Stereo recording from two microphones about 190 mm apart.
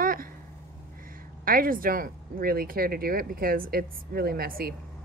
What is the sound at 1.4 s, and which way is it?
A woman's voice, 50° right (ahead or behind).